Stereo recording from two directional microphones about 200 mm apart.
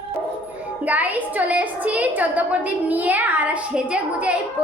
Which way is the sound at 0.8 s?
10° right (ahead or behind).